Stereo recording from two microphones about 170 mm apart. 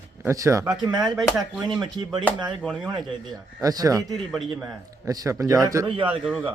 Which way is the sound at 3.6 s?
20° right (ahead or behind).